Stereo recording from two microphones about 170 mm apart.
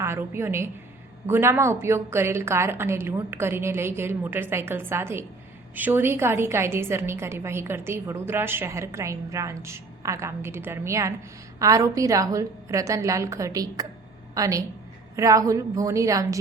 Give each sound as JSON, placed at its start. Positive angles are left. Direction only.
{"t": 0.0, "sound": "a woman's voice", "side_deg": -15}